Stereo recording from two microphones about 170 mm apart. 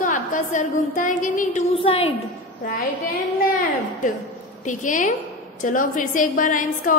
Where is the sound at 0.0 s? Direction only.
50° left (ahead or behind).